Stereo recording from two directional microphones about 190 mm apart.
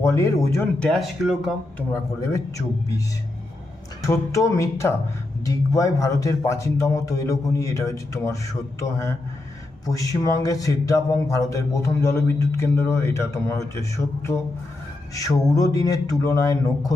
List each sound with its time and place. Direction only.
0.0 s speech: 15° left (ahead or behind)
0.9 s speech: centre (ahead or behind)
1.9 s speech: 15° left (ahead or behind)
4.0 s speech: 15° left (ahead or behind)
9.8 s speech: 15° left (ahead or behind)